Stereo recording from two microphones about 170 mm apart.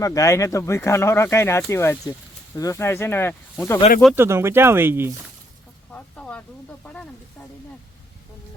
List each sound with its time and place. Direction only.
0.0 s speech: 20° left (ahead or behind)
4.1 s speech: 15° right (ahead or behind)
5.9 s a sound: 10° left (ahead or behind)
6.8 s speech: 5° left (ahead or behind)